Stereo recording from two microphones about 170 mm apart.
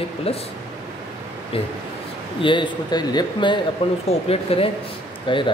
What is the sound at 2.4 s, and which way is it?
Speech, 30° left (ahead or behind).